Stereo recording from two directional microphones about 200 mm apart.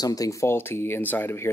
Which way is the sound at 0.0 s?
20° left (ahead or behind).